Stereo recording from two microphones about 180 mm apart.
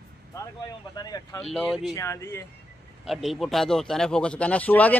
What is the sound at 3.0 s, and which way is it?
Speech, centre (ahead or behind).